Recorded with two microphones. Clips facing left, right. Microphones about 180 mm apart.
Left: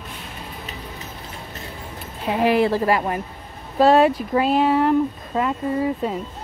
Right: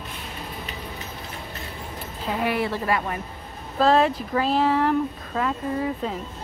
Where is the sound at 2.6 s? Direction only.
35° left (ahead or behind).